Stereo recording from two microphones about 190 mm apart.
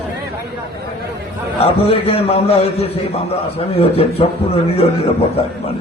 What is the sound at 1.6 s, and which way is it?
A man's voice, 30° left (ahead or behind).